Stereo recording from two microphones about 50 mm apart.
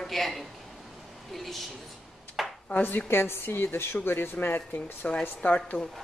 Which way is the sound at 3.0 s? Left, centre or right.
Left.